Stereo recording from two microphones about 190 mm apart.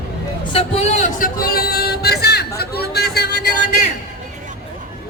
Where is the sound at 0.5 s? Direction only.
35° left (ahead or behind); by 3.2 s 55° left (ahead or behind).